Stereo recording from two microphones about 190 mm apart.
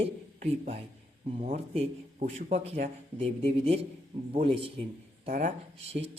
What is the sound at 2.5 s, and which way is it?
Speech, 50° right (ahead or behind).